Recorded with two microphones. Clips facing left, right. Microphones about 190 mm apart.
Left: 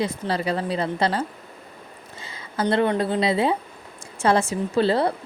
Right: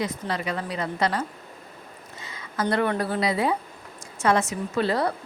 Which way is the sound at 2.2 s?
30° left (ahead or behind).